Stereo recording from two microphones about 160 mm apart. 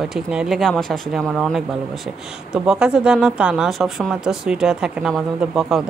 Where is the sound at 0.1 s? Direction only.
5° right (ahead or behind).